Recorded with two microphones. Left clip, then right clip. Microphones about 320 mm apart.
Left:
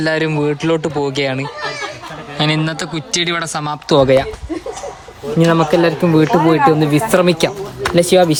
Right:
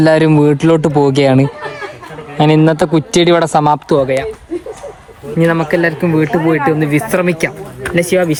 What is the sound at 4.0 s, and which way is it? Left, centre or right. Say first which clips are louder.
Speech: left 3 dB; centre.